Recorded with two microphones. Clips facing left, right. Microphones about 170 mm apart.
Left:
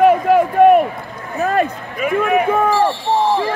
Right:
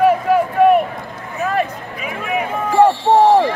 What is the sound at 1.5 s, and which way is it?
Speech, 55° left (ahead or behind).